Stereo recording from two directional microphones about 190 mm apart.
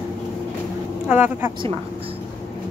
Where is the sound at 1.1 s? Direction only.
10° right (ahead or behind).